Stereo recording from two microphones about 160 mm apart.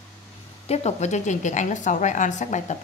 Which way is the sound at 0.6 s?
40° left (ahead or behind).